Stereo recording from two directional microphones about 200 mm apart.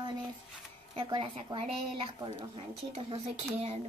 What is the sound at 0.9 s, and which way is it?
Speech, 25° right (ahead or behind).